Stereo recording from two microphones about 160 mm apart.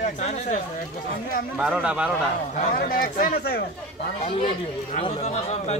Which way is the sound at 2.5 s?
55° left (ahead or behind).